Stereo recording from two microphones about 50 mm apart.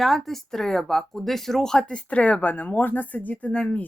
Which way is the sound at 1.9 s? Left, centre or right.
Left.